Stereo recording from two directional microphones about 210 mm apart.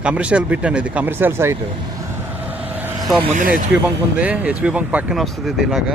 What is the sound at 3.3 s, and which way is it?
Speech, 40° right (ahead or behind).